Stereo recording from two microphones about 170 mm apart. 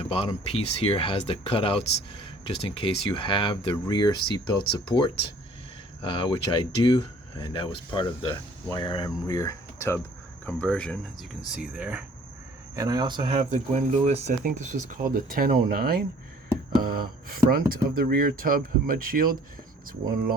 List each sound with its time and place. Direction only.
0.1 s speech: 35° left (ahead or behind); by 12.0 s 10° right (ahead or behind)
12.7 s speech: 20° right (ahead or behind)
13.5 s speech: 45° right (ahead or behind)